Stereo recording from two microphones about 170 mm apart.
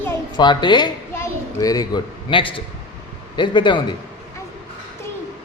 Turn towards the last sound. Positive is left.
turn(degrees=30)  # may be behind; listen again after turning